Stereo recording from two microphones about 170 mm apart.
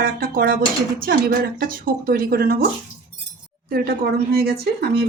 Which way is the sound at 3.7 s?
60° right (ahead or behind).